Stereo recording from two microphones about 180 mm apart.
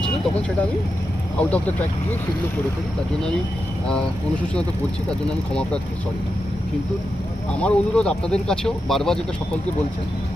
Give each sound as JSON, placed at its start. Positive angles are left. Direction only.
{"t": 1.4, "sound": "speech", "side_deg": 10}
{"t": 7.6, "sound": "speech", "side_deg": 5}